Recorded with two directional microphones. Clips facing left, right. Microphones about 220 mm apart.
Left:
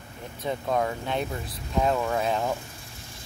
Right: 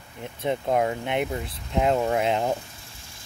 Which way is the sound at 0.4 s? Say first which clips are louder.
Right 3 dB; 20° right (ahead or behind).